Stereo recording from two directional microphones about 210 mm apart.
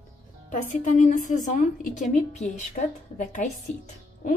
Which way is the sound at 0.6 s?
40° left (ahead or behind).